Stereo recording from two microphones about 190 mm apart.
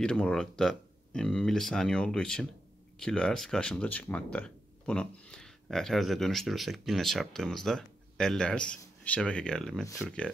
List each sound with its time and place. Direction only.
0.0 s speech: 5° left (ahead or behind)